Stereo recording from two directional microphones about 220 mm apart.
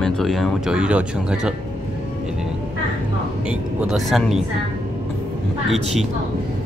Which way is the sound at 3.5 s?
5° right (ahead or behind).